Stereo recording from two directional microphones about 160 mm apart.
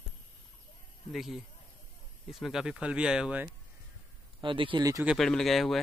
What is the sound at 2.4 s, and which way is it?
Speech, 5° right (ahead or behind).